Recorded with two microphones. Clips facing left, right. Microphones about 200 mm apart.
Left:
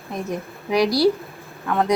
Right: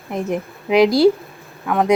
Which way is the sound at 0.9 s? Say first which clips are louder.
Right 3 dB; 50° right (ahead or behind).